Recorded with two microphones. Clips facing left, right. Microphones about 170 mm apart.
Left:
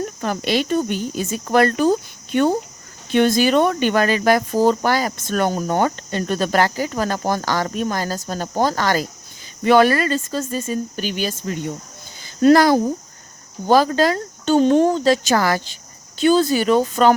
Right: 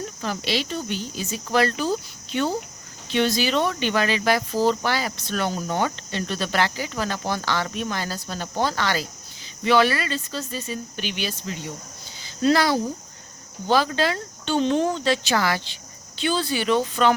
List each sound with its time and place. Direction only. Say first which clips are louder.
0.0 s speech: left 6 dB; 55° left (ahead or behind)